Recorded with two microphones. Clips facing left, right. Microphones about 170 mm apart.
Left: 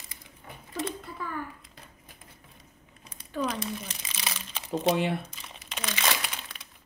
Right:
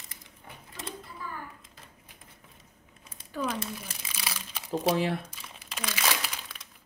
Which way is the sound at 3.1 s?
5° right (ahead or behind).